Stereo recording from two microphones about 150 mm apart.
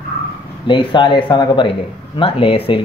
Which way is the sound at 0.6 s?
30° left (ahead or behind).